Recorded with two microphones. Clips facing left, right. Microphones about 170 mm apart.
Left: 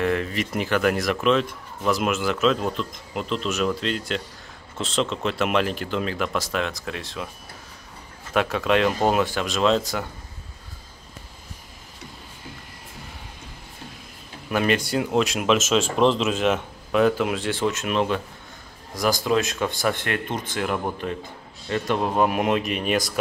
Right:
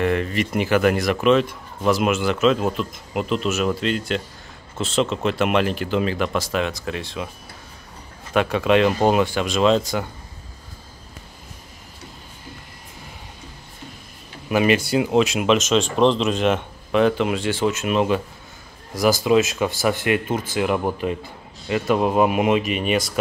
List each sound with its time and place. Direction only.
0.0 s speech: centre (ahead or behind)
8.3 s speech: centre (ahead or behind)
14.5 s speech: 5° right (ahead or behind)